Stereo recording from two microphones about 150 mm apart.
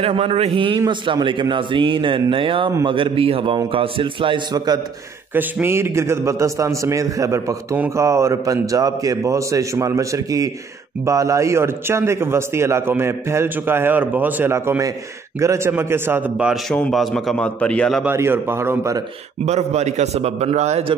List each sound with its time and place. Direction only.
0.0 s a man's voice: 40° right (ahead or behind)
5.3 s a man's voice: 15° right (ahead or behind)
16.7 s a man's voice: centre (ahead or behind)
18.0 s a man's voice: 15° right (ahead or behind)
19.4 s a man's voice: 50° right (ahead or behind)